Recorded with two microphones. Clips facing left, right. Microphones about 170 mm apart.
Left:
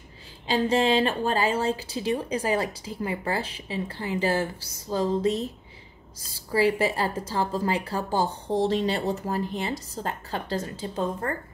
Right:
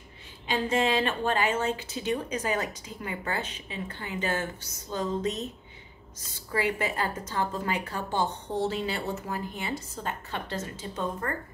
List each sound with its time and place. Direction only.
0.5 s a woman's voice: 30° left (ahead or behind)